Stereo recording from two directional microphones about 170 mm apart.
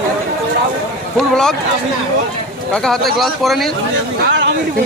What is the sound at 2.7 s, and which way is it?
Speech, 5° left (ahead or behind).